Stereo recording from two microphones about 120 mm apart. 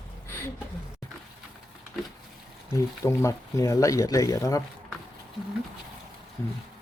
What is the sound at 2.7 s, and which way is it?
Speech, 25° left (ahead or behind).